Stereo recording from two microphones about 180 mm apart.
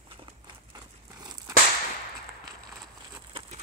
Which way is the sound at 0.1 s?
25° right (ahead or behind).